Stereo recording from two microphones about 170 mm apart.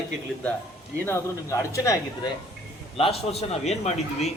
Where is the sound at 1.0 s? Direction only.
15° left (ahead or behind).